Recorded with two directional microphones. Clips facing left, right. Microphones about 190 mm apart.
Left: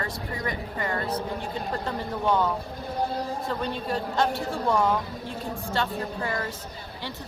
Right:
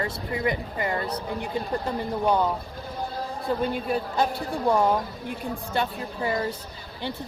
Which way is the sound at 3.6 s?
10° right (ahead or behind).